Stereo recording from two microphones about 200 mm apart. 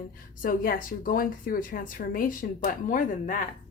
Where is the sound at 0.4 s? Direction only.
45° left (ahead or behind).